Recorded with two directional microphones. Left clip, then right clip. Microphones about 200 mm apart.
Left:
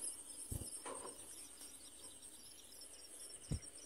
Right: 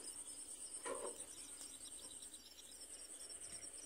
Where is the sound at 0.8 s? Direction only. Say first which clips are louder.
Right 4 dB; 35° right (ahead or behind).